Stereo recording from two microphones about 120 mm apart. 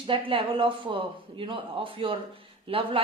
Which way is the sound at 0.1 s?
45° right (ahead or behind).